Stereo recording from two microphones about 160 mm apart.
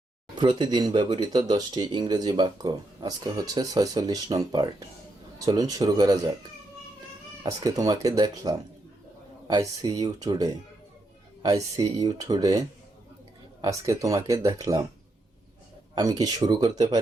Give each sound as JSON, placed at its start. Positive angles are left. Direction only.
{"t": 0.3, "sound": "speech", "side_deg": -30}
{"t": 7.4, "sound": "speech", "side_deg": -20}
{"t": 16.0, "sound": "speech", "side_deg": -25}